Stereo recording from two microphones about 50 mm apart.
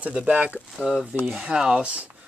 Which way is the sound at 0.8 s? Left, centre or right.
Centre.